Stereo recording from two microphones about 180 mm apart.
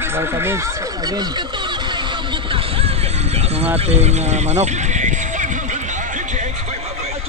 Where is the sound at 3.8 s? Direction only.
35° right (ahead or behind).